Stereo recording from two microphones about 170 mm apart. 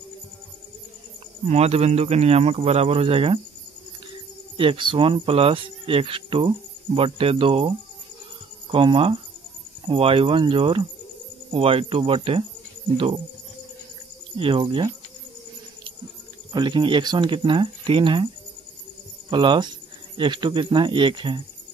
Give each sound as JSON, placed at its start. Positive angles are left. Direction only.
{"t": 1.5, "sound": "speech", "side_deg": -40}
{"t": 4.6, "sound": "speech", "side_deg": -30}
{"t": 14.3, "sound": "speech", "side_deg": -30}
{"t": 16.5, "sound": "speech", "side_deg": -25}
{"t": 19.3, "sound": "speech", "side_deg": -30}